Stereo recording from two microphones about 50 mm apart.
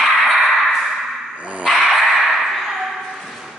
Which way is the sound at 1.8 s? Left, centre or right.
Centre.